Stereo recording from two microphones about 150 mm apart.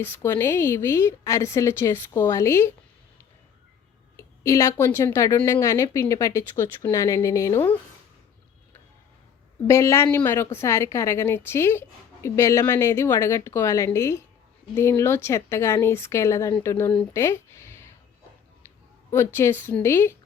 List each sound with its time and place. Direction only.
0.0 s a woman's voice: 15° left (ahead or behind)
4.2 s a woman's voice: 20° left (ahead or behind)
9.6 s a woman's voice: 20° left (ahead or behind)
17.2 s a sound: 15° left (ahead or behind)
19.1 s a woman's voice: 15° left (ahead or behind)